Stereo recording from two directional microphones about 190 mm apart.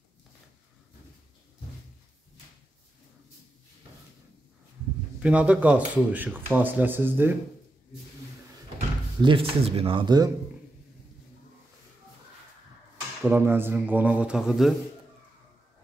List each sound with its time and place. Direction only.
5.2 s speech: 5° right (ahead or behind)
9.2 s speech: 30° right (ahead or behind)
13.3 s speech: 10° right (ahead or behind)